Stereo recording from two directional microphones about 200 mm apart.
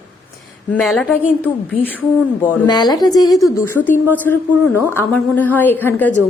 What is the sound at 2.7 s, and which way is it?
A woman's voice, 20° left (ahead or behind).